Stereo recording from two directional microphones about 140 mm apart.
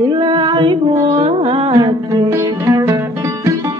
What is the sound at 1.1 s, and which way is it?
Carnatic music, 40° right (ahead or behind).